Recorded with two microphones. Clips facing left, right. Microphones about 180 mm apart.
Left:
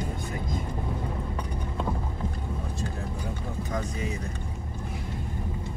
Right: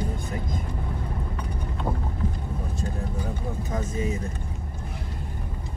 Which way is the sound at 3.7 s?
25° right (ahead or behind).